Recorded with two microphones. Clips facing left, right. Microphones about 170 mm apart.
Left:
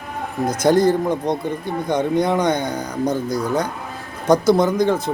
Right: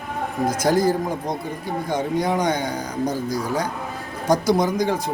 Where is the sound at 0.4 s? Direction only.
10° right (ahead or behind).